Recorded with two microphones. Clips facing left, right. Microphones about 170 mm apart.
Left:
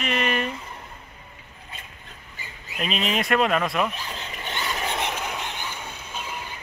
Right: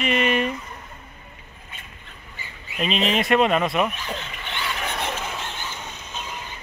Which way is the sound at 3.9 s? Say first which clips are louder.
Right 3 dB; 40° left (ahead or behind).